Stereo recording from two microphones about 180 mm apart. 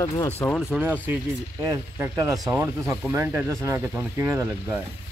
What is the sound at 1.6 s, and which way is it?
Speech, 20° right (ahead or behind).